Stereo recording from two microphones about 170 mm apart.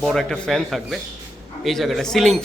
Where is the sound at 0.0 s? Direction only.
Centre (ahead or behind).